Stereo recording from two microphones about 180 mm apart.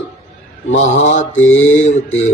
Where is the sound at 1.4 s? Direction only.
90° left.